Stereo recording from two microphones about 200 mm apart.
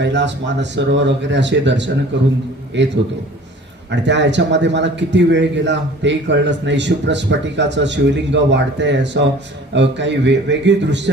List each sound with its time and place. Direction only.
0.0 s a man's voice: 60° right (ahead or behind)